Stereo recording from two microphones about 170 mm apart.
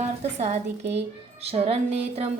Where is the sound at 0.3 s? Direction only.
40° right (ahead or behind).